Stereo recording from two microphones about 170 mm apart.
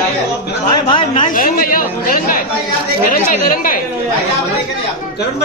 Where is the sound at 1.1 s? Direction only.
50° left (ahead or behind).